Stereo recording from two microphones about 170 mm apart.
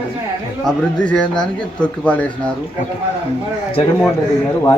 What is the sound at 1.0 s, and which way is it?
Speech, 5° left (ahead or behind).